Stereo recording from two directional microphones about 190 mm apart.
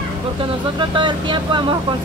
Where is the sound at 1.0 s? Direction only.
25° right (ahead or behind).